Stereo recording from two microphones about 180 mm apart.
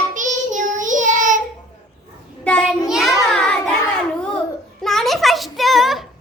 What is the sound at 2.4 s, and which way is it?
Child singing, 5° left (ahead or behind).